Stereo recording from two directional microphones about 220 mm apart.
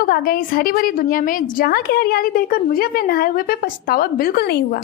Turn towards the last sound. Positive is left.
turn(degrees=45)  # may be behind; listen again after turning